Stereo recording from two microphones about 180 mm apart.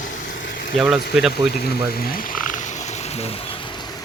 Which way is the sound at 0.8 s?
5° right (ahead or behind).